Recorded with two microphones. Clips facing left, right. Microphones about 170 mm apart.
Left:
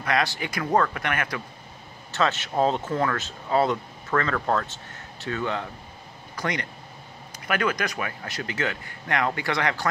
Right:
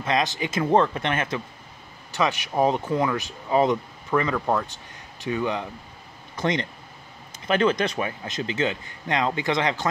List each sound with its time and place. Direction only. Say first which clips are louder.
0.0 s speech: right 1 dB; 20° right (ahead or behind)
2.1 s speech: right 1 dB; 15° right (ahead or behind)